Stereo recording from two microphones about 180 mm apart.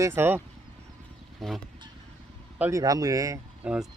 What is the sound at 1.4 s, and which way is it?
Speech, centre (ahead or behind).